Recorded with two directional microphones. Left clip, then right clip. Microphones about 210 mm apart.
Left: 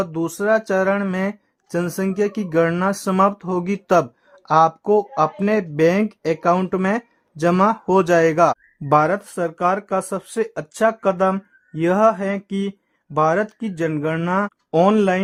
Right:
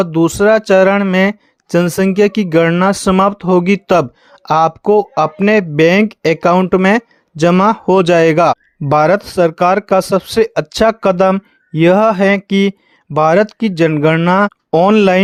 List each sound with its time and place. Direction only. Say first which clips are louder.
0.0 s speech: right 11 dB; 35° right (ahead or behind)